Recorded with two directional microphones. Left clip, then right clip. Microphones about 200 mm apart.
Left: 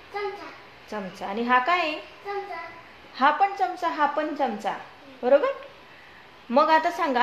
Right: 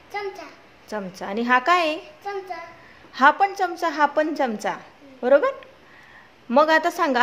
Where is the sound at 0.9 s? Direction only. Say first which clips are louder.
Right 2 dB; 25° right (ahead or behind).